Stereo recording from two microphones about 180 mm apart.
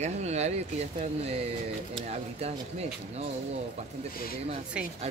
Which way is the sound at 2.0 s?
35° right (ahead or behind).